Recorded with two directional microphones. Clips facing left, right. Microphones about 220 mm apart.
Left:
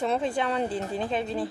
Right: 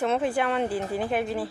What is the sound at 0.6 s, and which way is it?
Speech, 25° left (ahead or behind).